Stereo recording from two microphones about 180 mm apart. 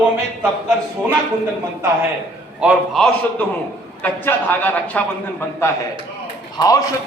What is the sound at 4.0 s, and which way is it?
Speech, 10° left (ahead or behind).